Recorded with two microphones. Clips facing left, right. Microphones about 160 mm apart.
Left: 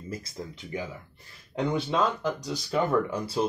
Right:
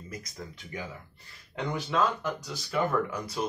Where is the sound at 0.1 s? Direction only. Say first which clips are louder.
Left 5 dB; 30° left (ahead or behind).